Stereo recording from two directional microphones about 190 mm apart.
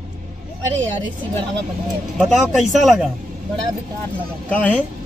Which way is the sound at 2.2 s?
Centre (ahead or behind).